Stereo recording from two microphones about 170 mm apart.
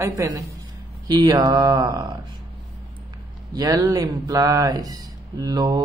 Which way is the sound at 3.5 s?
20° right (ahead or behind).